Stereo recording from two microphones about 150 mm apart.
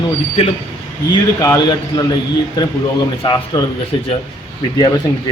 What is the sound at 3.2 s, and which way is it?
Speech, 30° left (ahead or behind).